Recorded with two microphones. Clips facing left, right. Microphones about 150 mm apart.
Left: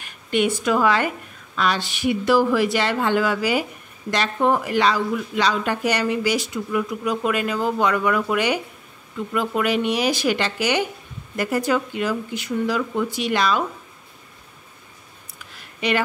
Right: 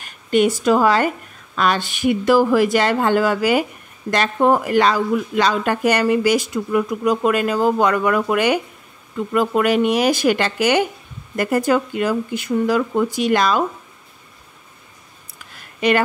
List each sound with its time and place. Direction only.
0.0 s speech: 40° right (ahead or behind)